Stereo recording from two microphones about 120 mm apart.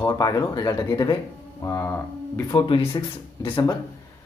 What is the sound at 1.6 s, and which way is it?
Speech, 20° left (ahead or behind).